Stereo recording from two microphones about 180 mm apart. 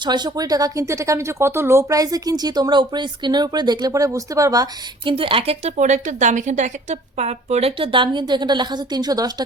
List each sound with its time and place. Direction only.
0.0 s speech: 25° right (ahead or behind)
5.1 s a woman's voice: 30° right (ahead or behind)